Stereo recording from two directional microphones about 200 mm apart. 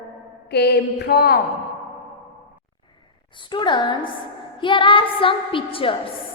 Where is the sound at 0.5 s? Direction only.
55° left (ahead or behind).